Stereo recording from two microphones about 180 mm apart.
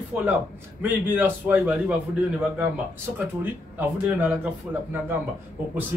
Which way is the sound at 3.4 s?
10° right (ahead or behind).